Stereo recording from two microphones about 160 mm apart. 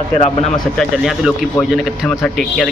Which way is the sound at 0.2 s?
45° left (ahead or behind).